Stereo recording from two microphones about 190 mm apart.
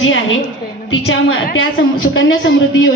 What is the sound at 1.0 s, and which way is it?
Speech, 90° left.